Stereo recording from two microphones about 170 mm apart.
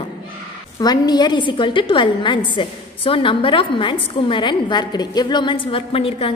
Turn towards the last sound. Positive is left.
turn(degrees=35)  # may be behind; listen again after turning